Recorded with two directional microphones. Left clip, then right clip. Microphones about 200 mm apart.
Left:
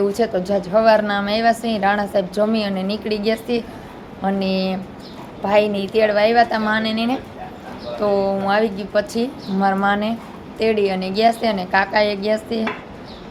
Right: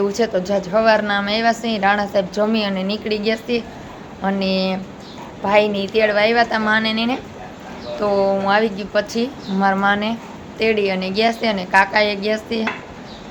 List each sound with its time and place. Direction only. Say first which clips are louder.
0.2 s a woman's voice: right 1 dB; 5° left (ahead or behind)